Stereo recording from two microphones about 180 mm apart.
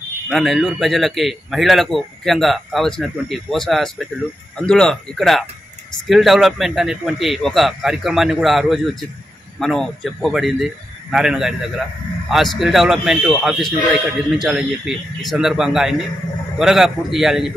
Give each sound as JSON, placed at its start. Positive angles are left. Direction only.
{"t": 0.3, "sound": "a man's voice", "side_deg": 0}